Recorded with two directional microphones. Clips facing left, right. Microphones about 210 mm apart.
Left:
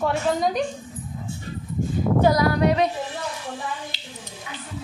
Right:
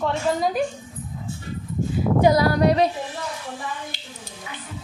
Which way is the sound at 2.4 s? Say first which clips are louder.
Right 1 dB; 35° right (ahead or behind).